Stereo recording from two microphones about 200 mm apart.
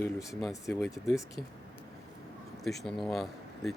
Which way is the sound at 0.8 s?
Centre (ahead or behind).